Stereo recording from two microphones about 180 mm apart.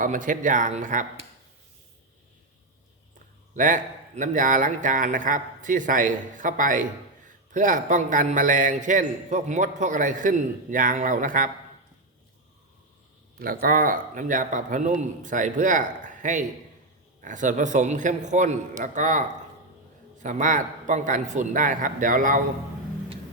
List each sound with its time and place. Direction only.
0.0 s a man's voice: 45° right (ahead or behind)
3.5 s a man's voice: 45° right (ahead or behind)
13.4 s a man's voice: 55° right (ahead or behind)
20.2 s a man's voice: 45° right (ahead or behind)